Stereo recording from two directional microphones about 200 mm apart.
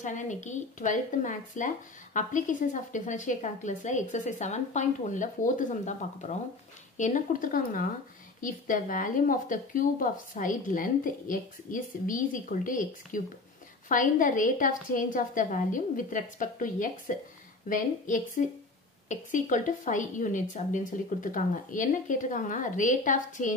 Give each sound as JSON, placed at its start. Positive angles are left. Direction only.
{"t": 0.0, "sound": "a woman's voice", "side_deg": 40}